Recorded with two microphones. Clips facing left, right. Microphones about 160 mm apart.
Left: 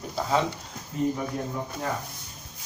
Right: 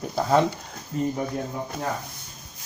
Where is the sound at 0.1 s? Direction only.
45° right (ahead or behind).